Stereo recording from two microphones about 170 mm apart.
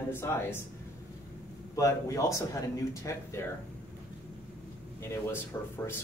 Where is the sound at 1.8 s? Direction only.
20° left (ahead or behind).